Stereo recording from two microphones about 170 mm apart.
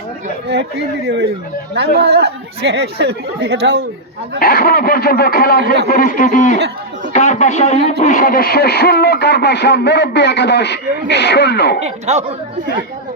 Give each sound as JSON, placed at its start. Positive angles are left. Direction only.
{"t": 0.4, "sound": "speech", "side_deg": -80}
{"t": 4.4, "sound": "speech", "side_deg": 60}
{"t": 11.8, "sound": "speech", "side_deg": -40}